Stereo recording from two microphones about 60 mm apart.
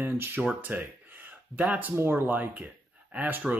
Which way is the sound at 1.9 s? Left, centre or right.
Right.